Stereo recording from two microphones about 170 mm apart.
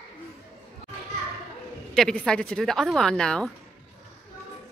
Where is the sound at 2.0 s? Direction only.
5° left (ahead or behind).